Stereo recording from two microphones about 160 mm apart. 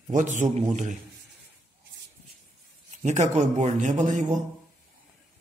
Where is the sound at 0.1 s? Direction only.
50° right (ahead or behind).